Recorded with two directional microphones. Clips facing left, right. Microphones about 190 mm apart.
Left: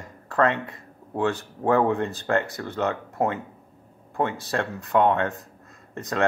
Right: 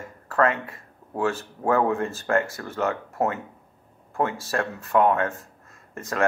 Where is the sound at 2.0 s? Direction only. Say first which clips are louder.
Even; 20° left (ahead or behind).